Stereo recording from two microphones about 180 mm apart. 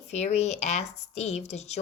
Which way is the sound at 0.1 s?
35° left (ahead or behind).